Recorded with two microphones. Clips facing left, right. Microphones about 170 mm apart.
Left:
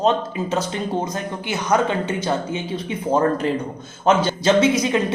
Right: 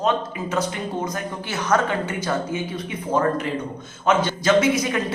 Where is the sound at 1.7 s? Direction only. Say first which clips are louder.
Left 2 dB; 20° left (ahead or behind).